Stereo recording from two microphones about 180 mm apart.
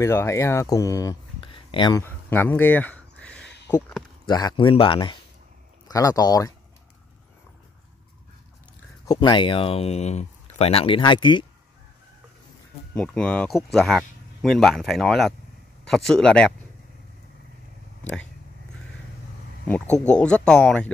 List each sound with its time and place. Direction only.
0.0 s speech: 15° left (ahead or behind)
2.0 s a sound: 10° left (ahead or behind)
3.7 s speech: 10° left (ahead or behind)
4.3 s speech: 20° left (ahead or behind)
9.0 s speech: 25° left (ahead or behind)
12.9 s speech: 5° left (ahead or behind)
19.7 s speech: 5° left (ahead or behind)